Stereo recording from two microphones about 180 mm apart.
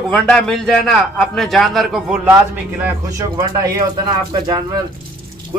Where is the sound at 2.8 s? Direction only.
15° right (ahead or behind).